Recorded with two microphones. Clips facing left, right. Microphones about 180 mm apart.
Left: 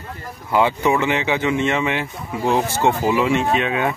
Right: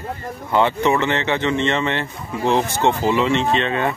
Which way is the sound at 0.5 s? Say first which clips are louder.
Even; 10° left (ahead or behind).